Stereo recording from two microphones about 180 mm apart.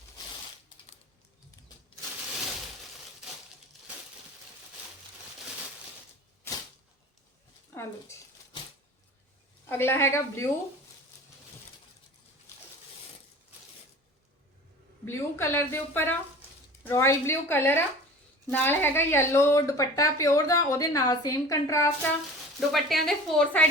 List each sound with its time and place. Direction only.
7.7 s speech: 15° left (ahead or behind)
9.6 s a woman's voice: 15° left (ahead or behind)
15.0 s a woman's voice: 15° left (ahead or behind)
22.7 s a woman's voice: centre (ahead or behind)